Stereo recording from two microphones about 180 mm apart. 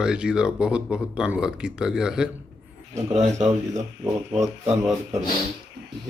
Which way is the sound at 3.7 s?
15° right (ahead or behind).